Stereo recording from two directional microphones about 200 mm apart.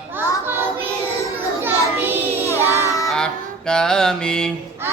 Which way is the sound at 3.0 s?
5° left (ahead or behind).